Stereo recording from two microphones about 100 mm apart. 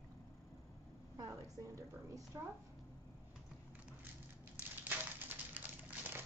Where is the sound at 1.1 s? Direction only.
35° right (ahead or behind).